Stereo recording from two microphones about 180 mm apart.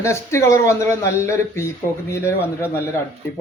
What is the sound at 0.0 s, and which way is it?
Speech, 15° left (ahead or behind).